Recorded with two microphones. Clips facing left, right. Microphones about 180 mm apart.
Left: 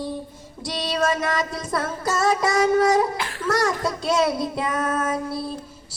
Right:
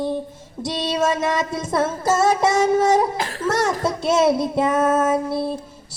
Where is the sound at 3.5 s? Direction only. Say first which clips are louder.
Right 1 dB; 25° right (ahead or behind).